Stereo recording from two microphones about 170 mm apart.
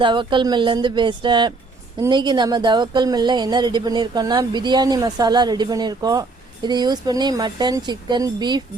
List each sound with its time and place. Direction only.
0.0 s a woman's voice: 30° right (ahead or behind)